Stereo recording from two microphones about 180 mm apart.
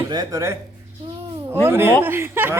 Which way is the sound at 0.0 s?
20° right (ahead or behind).